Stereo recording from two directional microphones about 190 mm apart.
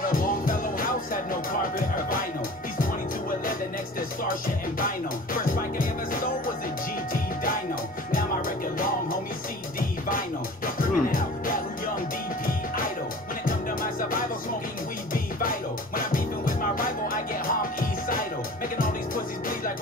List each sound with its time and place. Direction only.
0.0 s music: 45° left (ahead or behind)
4.7 s music: 45° left (ahead or behind)
9.8 s music: 45° left (ahead or behind)
16.0 s music: 45° left (ahead or behind)